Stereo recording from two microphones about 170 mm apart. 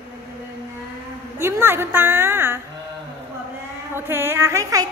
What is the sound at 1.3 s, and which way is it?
A woman's voice, 15° right (ahead or behind).